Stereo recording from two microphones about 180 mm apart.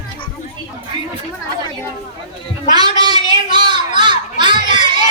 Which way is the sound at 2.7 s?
25° right (ahead or behind).